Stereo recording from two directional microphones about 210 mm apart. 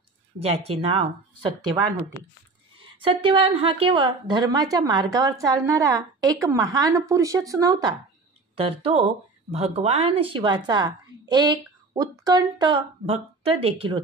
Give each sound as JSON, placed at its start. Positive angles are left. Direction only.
{"t": 0.4, "sound": "speech", "side_deg": -30}
{"t": 2.8, "sound": "speech", "side_deg": -25}
{"t": 8.5, "sound": "speech", "side_deg": -25}